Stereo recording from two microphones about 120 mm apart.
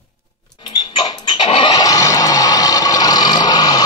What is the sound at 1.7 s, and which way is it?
Music, 30° left (ahead or behind).